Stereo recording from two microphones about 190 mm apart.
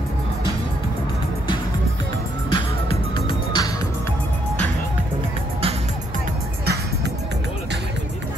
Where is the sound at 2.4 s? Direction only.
25° left (ahead or behind).